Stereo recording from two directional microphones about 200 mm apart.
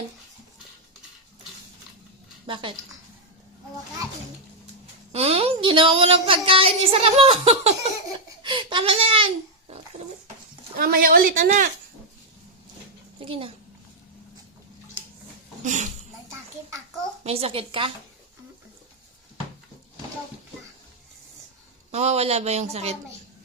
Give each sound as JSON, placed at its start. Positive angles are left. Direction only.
{"t": 2.5, "sound": "a woman's voice", "side_deg": -25}
{"t": 5.1, "sound": "a woman's voice", "side_deg": -30}
{"t": 8.4, "sound": "babbling", "side_deg": -25}
{"t": 10.8, "sound": "speech", "side_deg": -45}
{"t": 13.1, "sound": "a child's voice", "side_deg": -25}
{"t": 15.6, "sound": "speech", "side_deg": -35}
{"t": 17.2, "sound": "a woman's voice", "side_deg": -30}
{"t": 21.9, "sound": "speech", "side_deg": -35}